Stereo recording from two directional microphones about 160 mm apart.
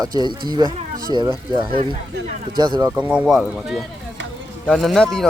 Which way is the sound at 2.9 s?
10° right (ahead or behind).